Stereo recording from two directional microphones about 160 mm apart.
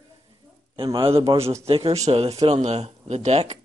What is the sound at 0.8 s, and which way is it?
Speech, 30° right (ahead or behind).